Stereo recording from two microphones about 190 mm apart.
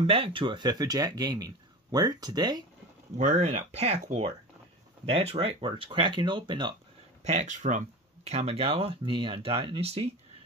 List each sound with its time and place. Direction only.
0.0 s speech: 30° right (ahead or behind)
3.2 s speech: 35° right (ahead or behind)
7.2 s speech: 35° right (ahead or behind)